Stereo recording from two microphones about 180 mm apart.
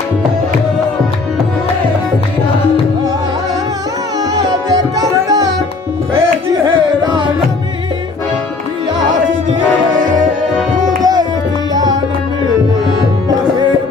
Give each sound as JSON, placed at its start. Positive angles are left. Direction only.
{"t": 4.4, "sound": "music", "side_deg": -20}
{"t": 6.6, "sound": "music", "side_deg": -25}
{"t": 11.0, "sound": "tabla", "side_deg": -20}